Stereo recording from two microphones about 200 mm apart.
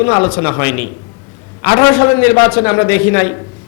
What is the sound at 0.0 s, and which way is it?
A man's voice, 25° left (ahead or behind).